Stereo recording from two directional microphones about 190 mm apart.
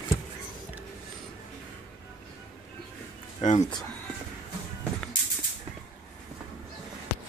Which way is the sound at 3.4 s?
40° left (ahead or behind).